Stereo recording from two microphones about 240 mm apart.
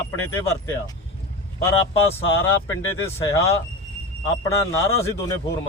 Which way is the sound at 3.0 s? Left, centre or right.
Centre.